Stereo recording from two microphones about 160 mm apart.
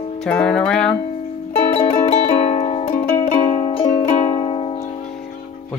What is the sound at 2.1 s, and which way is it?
Music, 45° left (ahead or behind).